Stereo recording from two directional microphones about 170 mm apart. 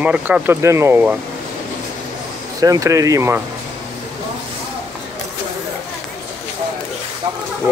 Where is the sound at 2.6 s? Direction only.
20° right (ahead or behind).